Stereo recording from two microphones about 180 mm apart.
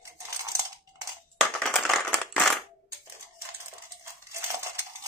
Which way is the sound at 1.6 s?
Centre (ahead or behind).